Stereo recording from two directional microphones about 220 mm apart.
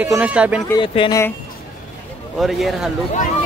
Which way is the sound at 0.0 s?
5° right (ahead or behind).